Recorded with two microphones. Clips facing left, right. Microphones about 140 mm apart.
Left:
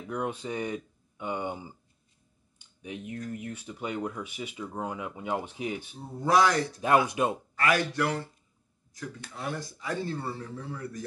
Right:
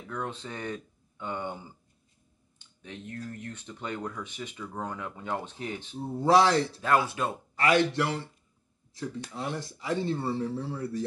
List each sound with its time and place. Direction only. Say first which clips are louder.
0.1 s speech: left 4 dB; 10° left (ahead or behind)
2.8 s speech: left 3 dB; 10° left (ahead or behind)
6.1 s speech: right 2 dB; 30° right (ahead or behind)
7.1 s speech: left 4 dB; 15° left (ahead or behind)
7.5 s speech: right 6 dB; 25° right (ahead or behind)